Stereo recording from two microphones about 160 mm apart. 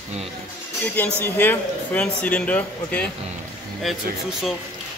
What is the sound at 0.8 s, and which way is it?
Speech, 10° left (ahead or behind).